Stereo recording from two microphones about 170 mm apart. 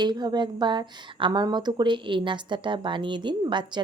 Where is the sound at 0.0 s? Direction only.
25° right (ahead or behind).